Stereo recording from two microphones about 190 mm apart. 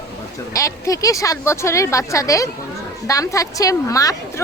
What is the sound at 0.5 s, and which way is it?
A woman's voice, 15° left (ahead or behind).